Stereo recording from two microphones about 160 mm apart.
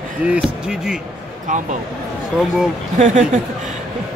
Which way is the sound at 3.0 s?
45° right (ahead or behind).